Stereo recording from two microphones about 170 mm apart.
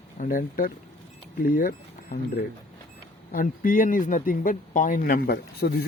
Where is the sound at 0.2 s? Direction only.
55° left (ahead or behind).